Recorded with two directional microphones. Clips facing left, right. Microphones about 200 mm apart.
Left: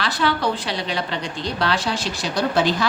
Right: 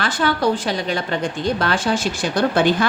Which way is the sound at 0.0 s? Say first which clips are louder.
Right 3 dB; 50° right (ahead or behind).